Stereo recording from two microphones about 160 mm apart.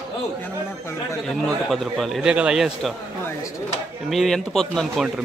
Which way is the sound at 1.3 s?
Centre (ahead or behind).